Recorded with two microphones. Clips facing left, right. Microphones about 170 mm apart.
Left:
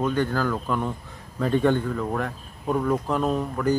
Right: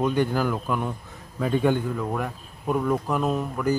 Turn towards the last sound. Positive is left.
turn(degrees=-5)  # may be behind; listen again after turning